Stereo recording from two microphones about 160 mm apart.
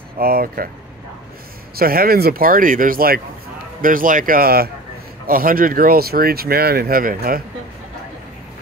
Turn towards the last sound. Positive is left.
turn(degrees=-60)  # may be behind; listen again after turning